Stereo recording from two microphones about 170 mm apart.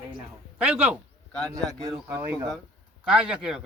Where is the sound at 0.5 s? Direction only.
10° right (ahead or behind).